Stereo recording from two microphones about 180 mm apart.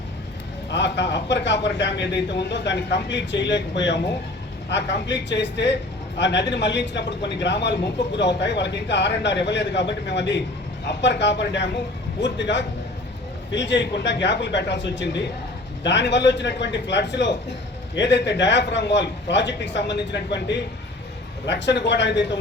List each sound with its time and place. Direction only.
0.7 s a man's voice: 80° left